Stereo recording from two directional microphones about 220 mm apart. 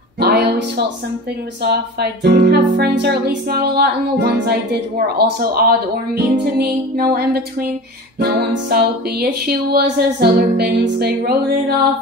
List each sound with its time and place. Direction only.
0.2 s music: 45° right (ahead or behind)